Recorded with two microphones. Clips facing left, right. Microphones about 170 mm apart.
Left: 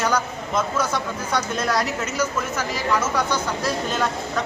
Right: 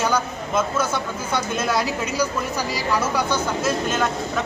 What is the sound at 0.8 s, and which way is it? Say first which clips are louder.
Speech: even; 25° right (ahead or behind).